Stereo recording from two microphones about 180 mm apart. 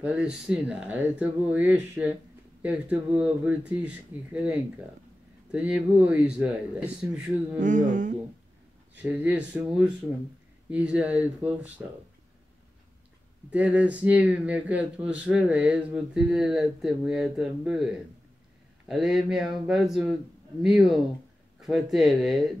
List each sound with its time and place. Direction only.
0.0 s a man's voice: 5° right (ahead or behind)
7.5 s a sound: 45° right (ahead or behind)
8.9 s a man's voice: 10° right (ahead or behind)
13.5 s a man's voice: 10° right (ahead or behind)
18.9 s speech: centre (ahead or behind)
21.5 s a sound: centre (ahead or behind)
21.9 s speech: centre (ahead or behind)